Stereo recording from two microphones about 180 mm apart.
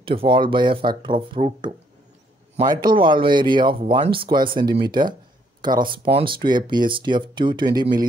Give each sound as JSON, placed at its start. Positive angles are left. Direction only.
{"t": 0.0, "sound": "speech", "side_deg": -30}